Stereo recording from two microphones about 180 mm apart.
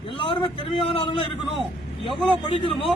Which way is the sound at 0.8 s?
30° left (ahead or behind).